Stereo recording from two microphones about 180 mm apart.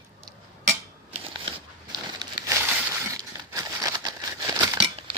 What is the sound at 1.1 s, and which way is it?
Scissors, 30° right (ahead or behind).